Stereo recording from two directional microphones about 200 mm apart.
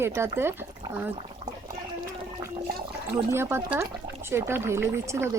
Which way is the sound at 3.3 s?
10° right (ahead or behind).